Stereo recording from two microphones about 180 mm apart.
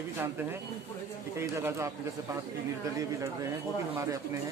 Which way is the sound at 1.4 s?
15° right (ahead or behind).